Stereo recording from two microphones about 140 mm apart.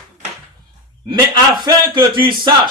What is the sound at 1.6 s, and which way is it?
Speech, 35° right (ahead or behind).